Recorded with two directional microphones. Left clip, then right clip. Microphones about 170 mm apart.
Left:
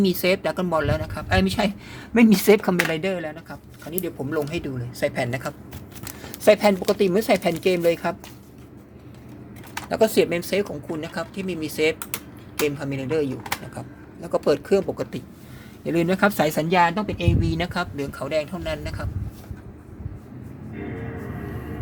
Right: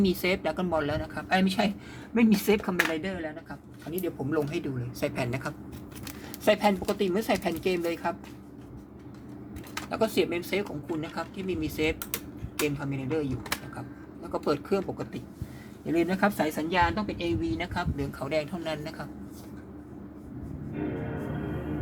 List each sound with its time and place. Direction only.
0.0 s speech: 35° left (ahead or behind)
2.1 s speech: 70° left (ahead or behind); by 3.3 s 50° left (ahead or behind)
3.9 s speech: 35° left (ahead or behind)
6.1 s speech: 40° left (ahead or behind)
9.9 s speech: 50° left (ahead or behind)
11.9 s a sound: 10° left (ahead or behind)
12.6 s speech: 55° left (ahead or behind); by 17.7 s 85° left
17.7 s speech: 40° left (ahead or behind)